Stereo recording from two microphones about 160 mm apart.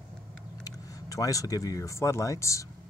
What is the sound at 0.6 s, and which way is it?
Speech, 20° left (ahead or behind).